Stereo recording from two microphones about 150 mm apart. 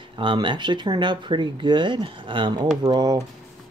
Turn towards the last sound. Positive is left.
turn(degrees=-30)  # may be behind; listen again after turning